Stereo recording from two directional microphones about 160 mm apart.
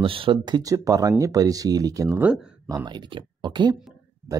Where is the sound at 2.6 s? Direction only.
25° right (ahead or behind).